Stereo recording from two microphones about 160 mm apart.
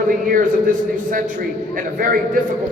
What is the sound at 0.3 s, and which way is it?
A man's voice, 55° right (ahead or behind).